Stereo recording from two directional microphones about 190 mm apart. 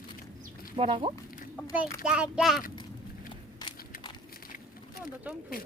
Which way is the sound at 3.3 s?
25° left (ahead or behind).